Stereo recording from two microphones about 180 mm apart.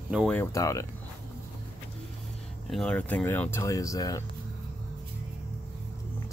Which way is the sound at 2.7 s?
5° left (ahead or behind).